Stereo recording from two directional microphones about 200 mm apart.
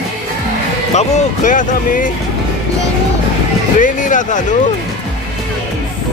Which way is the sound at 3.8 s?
40° left (ahead or behind).